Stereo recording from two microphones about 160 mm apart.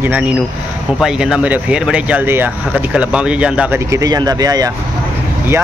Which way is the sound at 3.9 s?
25° right (ahead or behind).